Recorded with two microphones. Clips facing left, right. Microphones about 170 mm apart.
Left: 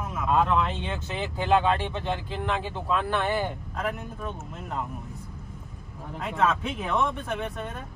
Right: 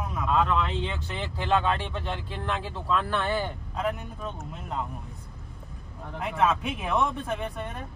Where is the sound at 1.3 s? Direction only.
20° left (ahead or behind).